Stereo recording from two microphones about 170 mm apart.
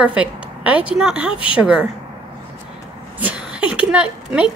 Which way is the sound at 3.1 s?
10° right (ahead or behind).